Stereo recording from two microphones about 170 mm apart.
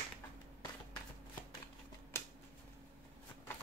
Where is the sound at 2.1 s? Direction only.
15° left (ahead or behind).